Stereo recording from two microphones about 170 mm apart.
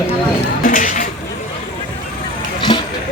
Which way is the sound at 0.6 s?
55° left (ahead or behind).